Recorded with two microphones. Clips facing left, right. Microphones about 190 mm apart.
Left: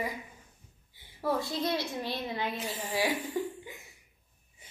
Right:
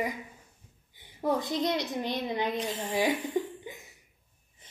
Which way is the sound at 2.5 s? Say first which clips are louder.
Right 4 dB; 5° left (ahead or behind).